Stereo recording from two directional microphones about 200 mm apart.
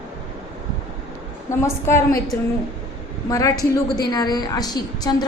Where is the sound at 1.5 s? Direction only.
15° left (ahead or behind).